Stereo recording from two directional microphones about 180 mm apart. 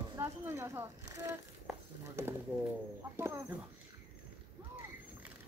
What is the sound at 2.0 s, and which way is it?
Speech, 15° right (ahead or behind).